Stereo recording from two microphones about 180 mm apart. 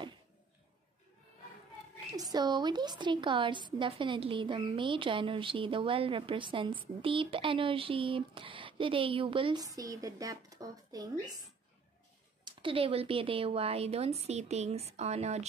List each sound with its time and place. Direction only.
2.1 s a woman's voice: 20° right (ahead or behind)
12.4 s a woman's voice: 30° right (ahead or behind)